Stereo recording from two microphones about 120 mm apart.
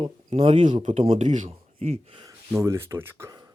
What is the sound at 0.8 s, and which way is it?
Speech, 75° right (ahead or behind).